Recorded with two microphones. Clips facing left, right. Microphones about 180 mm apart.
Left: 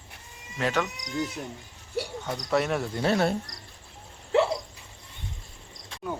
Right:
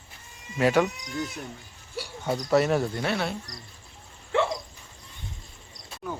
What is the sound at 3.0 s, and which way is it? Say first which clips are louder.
Cricket: left 4 dB; 40° left (ahead or behind).